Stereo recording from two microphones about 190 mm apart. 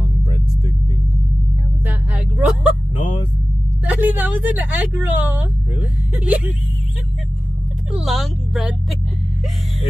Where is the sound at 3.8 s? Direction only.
10° right (ahead or behind).